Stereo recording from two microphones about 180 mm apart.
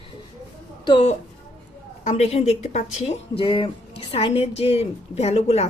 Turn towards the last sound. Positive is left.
turn(degrees=35)  # may be behind; listen again after turning